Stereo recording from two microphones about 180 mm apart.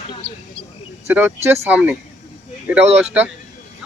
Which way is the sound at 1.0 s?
10° right (ahead or behind).